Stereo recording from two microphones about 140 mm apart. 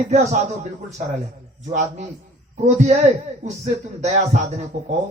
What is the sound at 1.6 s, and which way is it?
Speech, 60° right (ahead or behind).